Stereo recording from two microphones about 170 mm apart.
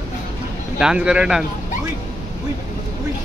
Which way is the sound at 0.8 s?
5° right (ahead or behind).